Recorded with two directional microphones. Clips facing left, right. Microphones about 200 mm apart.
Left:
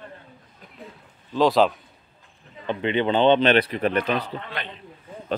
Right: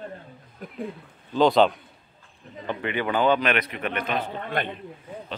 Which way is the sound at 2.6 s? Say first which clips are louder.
Left 5 dB; 20° left (ahead or behind).